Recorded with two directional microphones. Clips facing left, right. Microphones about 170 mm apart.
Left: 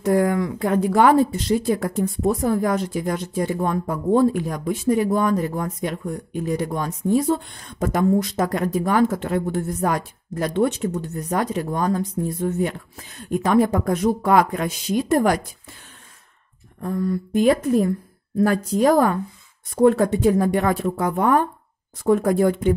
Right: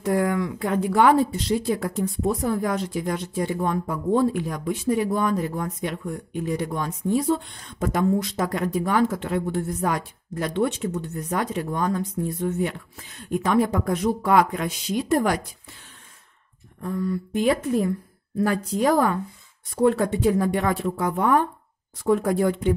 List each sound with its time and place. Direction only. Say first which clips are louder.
0.0 s speech: left 3 dB; 45° left (ahead or behind)
16.8 s speech: left 3 dB; 45° left (ahead or behind)